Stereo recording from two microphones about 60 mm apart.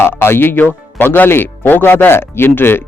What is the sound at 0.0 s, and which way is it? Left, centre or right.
A man's voice, left.